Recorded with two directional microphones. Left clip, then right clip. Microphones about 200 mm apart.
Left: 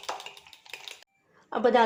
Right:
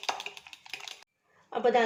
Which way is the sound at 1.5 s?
35° left (ahead or behind).